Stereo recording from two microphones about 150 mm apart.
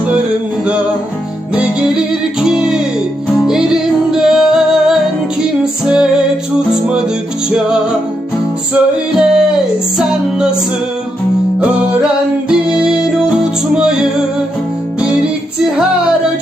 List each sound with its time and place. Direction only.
2.4 s music: 5° right (ahead or behind)
9.1 s a sound: 5° right (ahead or behind)
10.0 s music: 5° right (ahead or behind)
12.5 s music: 5° right (ahead or behind)